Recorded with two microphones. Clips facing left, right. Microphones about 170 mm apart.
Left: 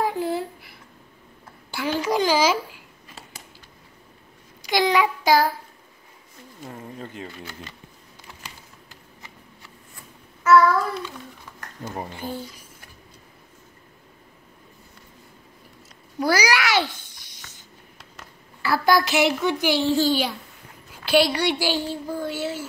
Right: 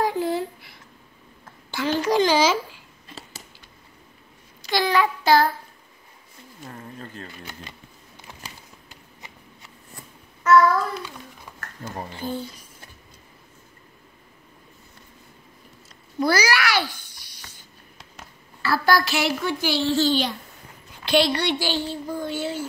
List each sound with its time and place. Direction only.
0.0 s a sound: 5° left (ahead or behind)
1.4 s a child's voice: 10° left (ahead or behind)
4.6 s child singing: 15° left (ahead or behind)
6.7 s a woman's voice: 10° left (ahead or behind)
10.4 s a sound: 5° left (ahead or behind)
12.0 s a woman's voice: 15° left (ahead or behind)
16.2 s babbling: 15° left (ahead or behind)
18.6 s a woman's voice: 15° left (ahead or behind)